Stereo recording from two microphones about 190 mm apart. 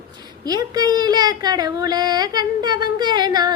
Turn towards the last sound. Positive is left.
turn(degrees=-20)  # may be behind; listen again after turning